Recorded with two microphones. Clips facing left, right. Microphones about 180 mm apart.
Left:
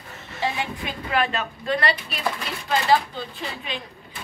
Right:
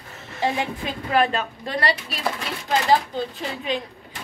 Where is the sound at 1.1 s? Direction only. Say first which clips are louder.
Right 3 dB; 40° right (ahead or behind).